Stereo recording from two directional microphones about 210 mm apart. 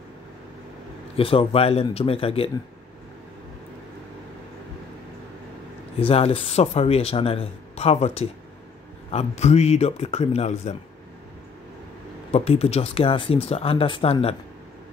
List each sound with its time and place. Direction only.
1.1 s speech: 25° left (ahead or behind)
5.9 s a man's voice: 25° left (ahead or behind)
12.3 s speech: 30° left (ahead or behind)